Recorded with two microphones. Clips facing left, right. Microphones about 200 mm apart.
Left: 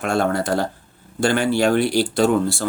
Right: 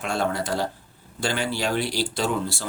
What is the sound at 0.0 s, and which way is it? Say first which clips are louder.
Speech: left 6 dB; 50° left (ahead or behind).